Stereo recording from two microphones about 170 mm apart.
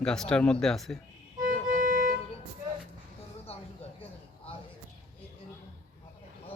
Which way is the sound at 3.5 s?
35° left (ahead or behind).